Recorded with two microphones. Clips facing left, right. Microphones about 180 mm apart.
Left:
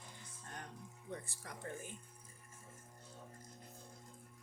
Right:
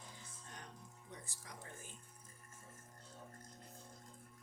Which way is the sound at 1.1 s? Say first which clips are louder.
Left 7 dB; 55° left (ahead or behind).